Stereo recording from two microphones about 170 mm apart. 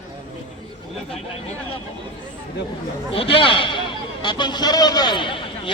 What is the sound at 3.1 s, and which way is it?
A man's voice, 30° left (ahead or behind).